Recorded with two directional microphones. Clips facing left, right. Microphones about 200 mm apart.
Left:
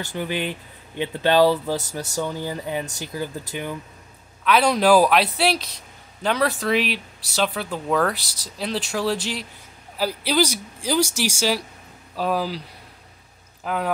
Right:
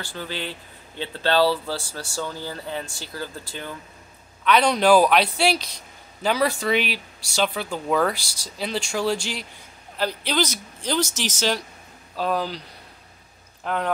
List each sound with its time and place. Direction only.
0.0 s speech: 20° left (ahead or behind)
4.5 s speech: 5° left (ahead or behind)
13.7 s speech: 5° left (ahead or behind)